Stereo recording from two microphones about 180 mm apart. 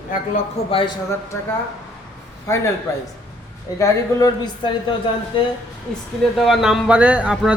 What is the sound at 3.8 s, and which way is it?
Speech, 20° left (ahead or behind).